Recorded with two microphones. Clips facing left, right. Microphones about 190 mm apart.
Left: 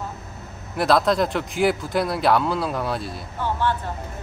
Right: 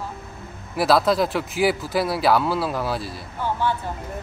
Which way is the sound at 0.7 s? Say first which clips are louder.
Even; 5° right (ahead or behind).